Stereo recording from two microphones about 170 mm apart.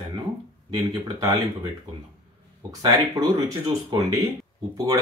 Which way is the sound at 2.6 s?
20° right (ahead or behind).